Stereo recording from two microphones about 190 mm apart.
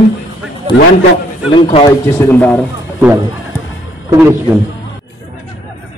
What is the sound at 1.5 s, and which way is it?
Speech, 30° left (ahead or behind).